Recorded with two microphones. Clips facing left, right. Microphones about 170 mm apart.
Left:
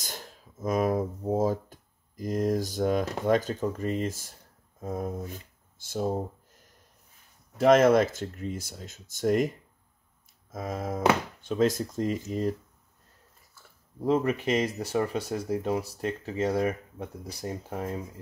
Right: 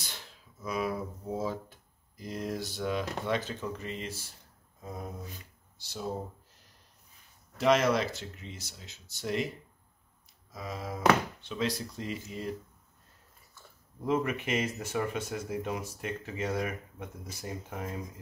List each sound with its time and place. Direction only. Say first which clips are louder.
0.0 s speech: left 6 dB; 45° left (ahead or behind)
10.5 s speech: left 6 dB; 50° left (ahead or behind)
14.0 s speech: left 5 dB; 35° left (ahead or behind)